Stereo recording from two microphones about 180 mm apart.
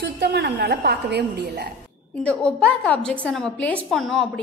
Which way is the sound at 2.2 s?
5° left (ahead or behind).